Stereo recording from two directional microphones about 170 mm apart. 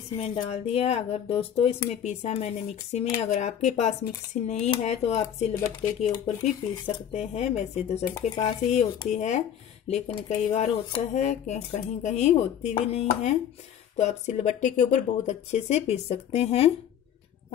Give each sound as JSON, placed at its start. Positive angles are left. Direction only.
{"t": 0.2, "sound": "speech", "side_deg": 40}